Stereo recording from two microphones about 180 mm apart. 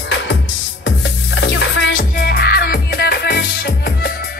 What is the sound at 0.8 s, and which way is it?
Music, 80° left.